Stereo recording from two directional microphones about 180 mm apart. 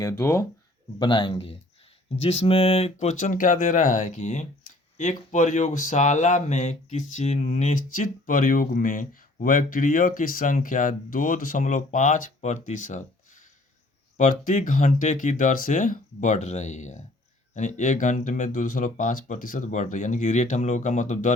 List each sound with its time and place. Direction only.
0.0 s speech: 15° left (ahead or behind)
0.9 s speech: 25° left (ahead or behind); by 21.3 s 45° left (ahead or behind)